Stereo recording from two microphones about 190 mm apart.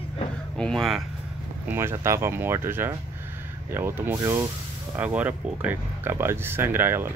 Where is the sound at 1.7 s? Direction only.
10° right (ahead or behind).